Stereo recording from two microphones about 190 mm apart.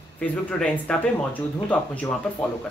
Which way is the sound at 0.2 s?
5° left (ahead or behind).